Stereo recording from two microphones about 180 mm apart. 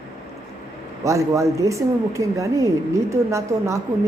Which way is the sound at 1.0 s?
15° right (ahead or behind).